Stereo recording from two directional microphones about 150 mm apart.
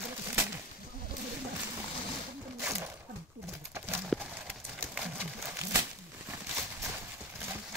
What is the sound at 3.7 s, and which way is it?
Clip-clop, 15° right (ahead or behind).